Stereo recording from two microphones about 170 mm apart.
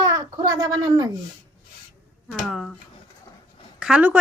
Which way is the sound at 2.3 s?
Centre (ahead or behind).